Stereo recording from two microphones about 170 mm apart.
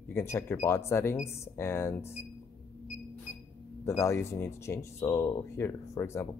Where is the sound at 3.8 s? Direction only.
15° left (ahead or behind).